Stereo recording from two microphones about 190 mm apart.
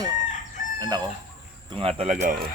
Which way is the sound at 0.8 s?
20° right (ahead or behind).